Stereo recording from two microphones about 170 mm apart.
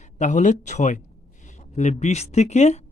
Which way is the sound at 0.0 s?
45° left (ahead or behind).